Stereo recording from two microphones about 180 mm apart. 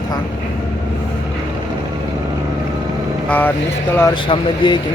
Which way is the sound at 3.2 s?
10° left (ahead or behind).